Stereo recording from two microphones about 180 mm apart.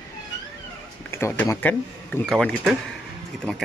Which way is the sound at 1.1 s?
15° left (ahead or behind).